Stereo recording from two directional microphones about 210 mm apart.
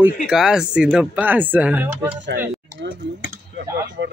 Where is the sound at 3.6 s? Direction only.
15° right (ahead or behind).